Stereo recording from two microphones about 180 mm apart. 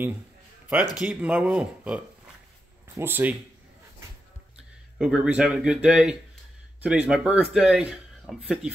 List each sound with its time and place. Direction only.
0.9 s speech: 5° right (ahead or behind)
3.0 s speech: 10° right (ahead or behind)
4.9 s speech: 5° right (ahead or behind)